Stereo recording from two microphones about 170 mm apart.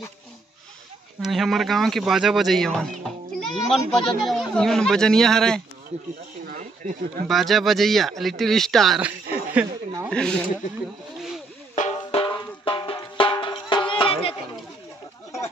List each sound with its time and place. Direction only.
1.2 s speech: centre (ahead or behind)
6.4 s a sound: 55° right (ahead or behind)
7.2 s speech: centre (ahead or behind)
9.3 s a sound: 10° right (ahead or behind)
11.7 s music: 45° left (ahead or behind)
12.2 s music: 30° left (ahead or behind)
13.2 s drum: 30° left (ahead or behind)